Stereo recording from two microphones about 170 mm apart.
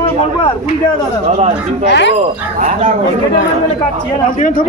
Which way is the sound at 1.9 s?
90° left.